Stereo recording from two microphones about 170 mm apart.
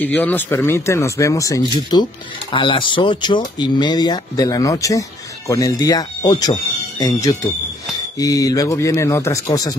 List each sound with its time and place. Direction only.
0.0 s speech: 10° left (ahead or behind)